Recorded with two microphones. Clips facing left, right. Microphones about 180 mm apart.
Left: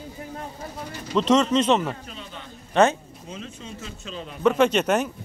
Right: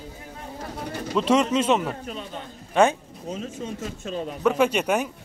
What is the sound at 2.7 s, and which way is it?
Speech, 10° right (ahead or behind).